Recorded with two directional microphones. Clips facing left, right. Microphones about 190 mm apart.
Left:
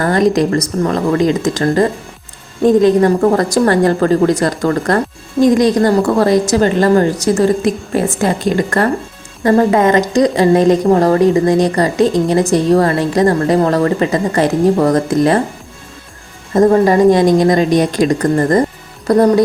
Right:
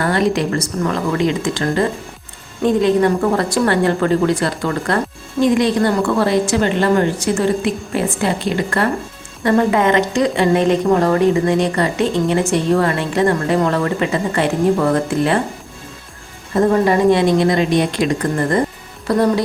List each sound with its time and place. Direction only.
0.0 s a woman's voice: 40° left (ahead or behind)
16.6 s a woman's voice: 40° left (ahead or behind)